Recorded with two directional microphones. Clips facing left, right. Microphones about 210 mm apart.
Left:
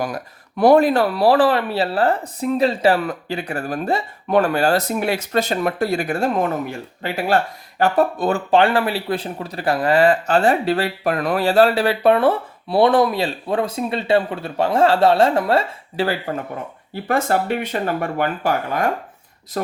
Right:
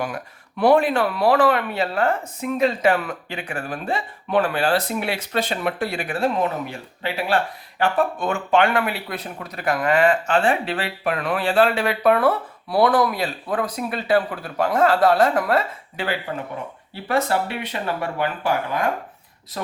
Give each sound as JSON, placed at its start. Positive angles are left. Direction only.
{"t": 0.0, "sound": "speech", "side_deg": 40}
{"t": 16.9, "sound": "speech", "side_deg": 50}